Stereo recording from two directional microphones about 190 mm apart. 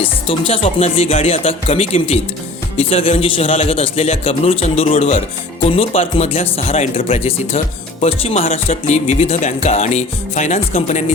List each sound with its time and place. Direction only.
0.0 s speech: 30° left (ahead or behind)